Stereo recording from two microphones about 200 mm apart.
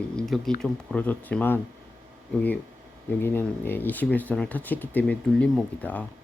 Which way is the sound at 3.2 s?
10° left (ahead or behind).